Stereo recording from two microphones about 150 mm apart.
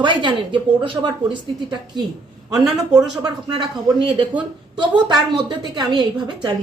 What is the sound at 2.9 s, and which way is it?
Speech, 25° right (ahead or behind).